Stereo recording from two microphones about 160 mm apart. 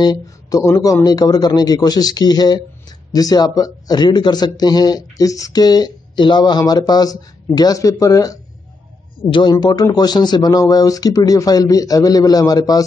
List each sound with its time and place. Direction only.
0.0 s a man's voice: 25° left (ahead or behind)